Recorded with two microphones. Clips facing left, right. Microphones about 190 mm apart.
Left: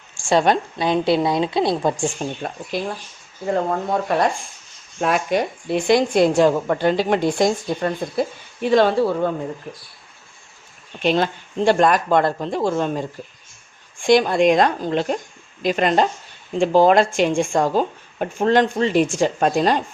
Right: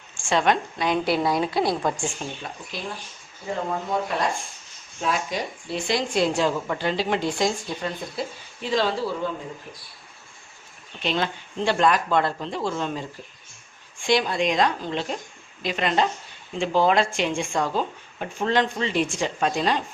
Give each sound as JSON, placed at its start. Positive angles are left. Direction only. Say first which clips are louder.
{"t": 0.3, "sound": "a woman's voice", "louder": "left 5 dB", "side_deg": 35}
{"t": 2.2, "sound": "speech", "louder": "left 7 dB", "side_deg": 45}
{"t": 3.4, "sound": "a woman's voice", "louder": "left 7 dB", "side_deg": 55}
{"t": 4.9, "sound": "a woman's voice", "louder": "left 7 dB", "side_deg": 60}
{"t": 11.0, "sound": "speech", "louder": "left 7 dB", "side_deg": 45}